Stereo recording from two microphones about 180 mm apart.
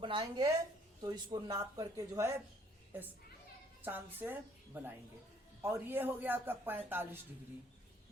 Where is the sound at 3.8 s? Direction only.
10° right (ahead or behind).